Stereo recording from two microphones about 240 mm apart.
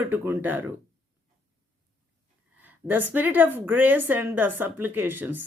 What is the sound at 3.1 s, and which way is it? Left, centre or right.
A woman's voice, centre.